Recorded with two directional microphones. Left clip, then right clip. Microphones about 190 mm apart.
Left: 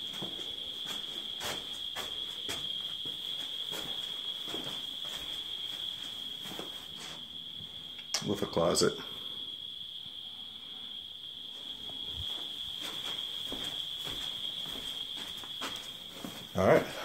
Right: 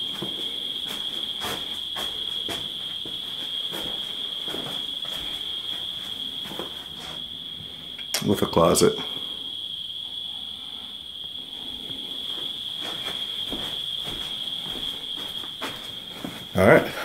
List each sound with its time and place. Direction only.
8.1 s speech: 25° right (ahead or behind)
16.5 s dog: 20° right (ahead or behind)